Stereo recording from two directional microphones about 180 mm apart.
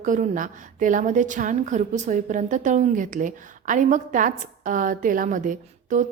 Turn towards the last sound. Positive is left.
turn(degrees=-45)  # may be behind; listen again after turning